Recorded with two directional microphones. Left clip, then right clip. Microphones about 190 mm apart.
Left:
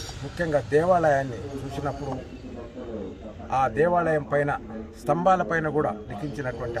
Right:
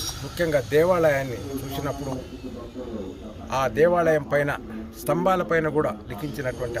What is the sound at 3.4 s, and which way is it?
A man's voice, 5° left (ahead or behind).